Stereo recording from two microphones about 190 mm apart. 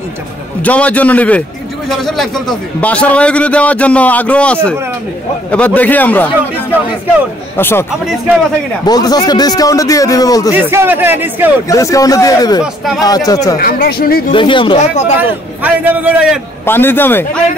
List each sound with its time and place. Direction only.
0.6 s a man's voice: 5° left (ahead or behind)
7.5 s a man's voice: 10° left (ahead or behind)
8.8 s a man's voice: 20° left (ahead or behind)
10.5 s a man's voice: 10° right (ahead or behind)
11.7 s a man's voice: 15° left (ahead or behind)
13.6 s speech: 50° left (ahead or behind)
14.3 s a man's voice: 25° left (ahead or behind)
15.1 s a man's voice: 10° right (ahead or behind)
16.6 s a man's voice: 10° left (ahead or behind)